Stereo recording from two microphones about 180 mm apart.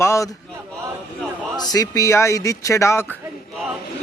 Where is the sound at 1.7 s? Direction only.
20° left (ahead or behind).